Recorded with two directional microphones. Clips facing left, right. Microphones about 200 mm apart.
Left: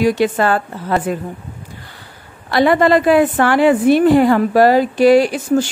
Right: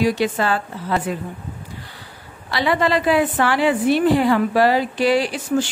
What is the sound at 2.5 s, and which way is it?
A woman's voice, 50° left (ahead or behind).